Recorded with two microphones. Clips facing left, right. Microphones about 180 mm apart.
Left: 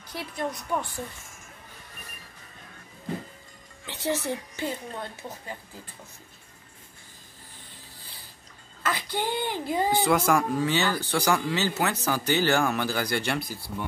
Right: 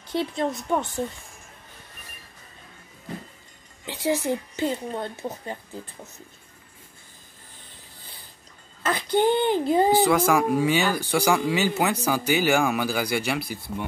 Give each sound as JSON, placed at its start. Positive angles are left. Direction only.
{"t": 0.0, "sound": "speech", "side_deg": -25}
{"t": 3.8, "sound": "speech", "side_deg": -15}
{"t": 8.8, "sound": "speech", "side_deg": -25}
{"t": 9.9, "sound": "speech", "side_deg": 0}
{"t": 10.5, "sound": "speech", "side_deg": -10}